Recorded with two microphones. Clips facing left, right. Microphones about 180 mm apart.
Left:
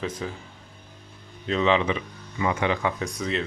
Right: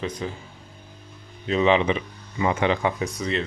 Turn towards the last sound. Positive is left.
turn(degrees=0)  # may be behind; listen again after turning